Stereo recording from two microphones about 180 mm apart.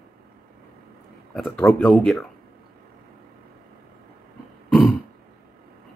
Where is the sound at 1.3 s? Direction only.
Centre (ahead or behind).